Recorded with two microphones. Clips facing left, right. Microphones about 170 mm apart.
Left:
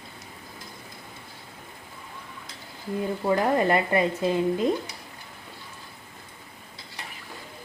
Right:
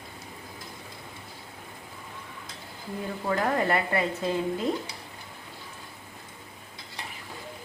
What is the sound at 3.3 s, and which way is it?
Speech, 20° left (ahead or behind).